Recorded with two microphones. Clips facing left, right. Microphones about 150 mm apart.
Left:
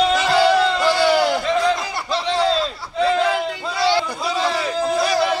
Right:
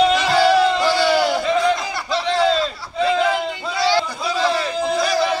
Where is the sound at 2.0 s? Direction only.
Centre (ahead or behind).